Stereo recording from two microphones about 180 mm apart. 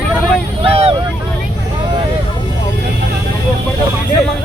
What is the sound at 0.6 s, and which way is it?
Vehicle, 30° right (ahead or behind).